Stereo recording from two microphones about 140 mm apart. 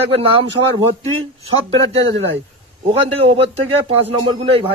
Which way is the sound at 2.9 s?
45° right (ahead or behind).